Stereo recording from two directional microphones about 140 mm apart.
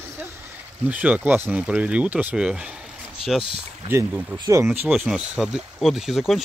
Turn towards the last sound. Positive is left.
turn(degrees=0)  # may be behind; listen again after turning